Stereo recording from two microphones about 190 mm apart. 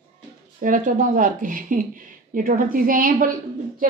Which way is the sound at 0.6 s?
45° right (ahead or behind).